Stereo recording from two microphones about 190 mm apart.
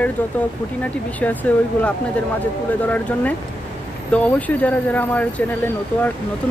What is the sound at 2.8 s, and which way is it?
Speech, 10° left (ahead or behind).